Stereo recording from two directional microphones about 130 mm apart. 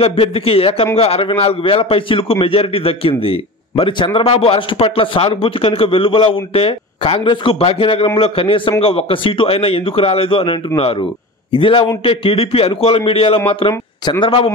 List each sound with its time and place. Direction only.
0.0 s a man's voice: 45° left (ahead or behind)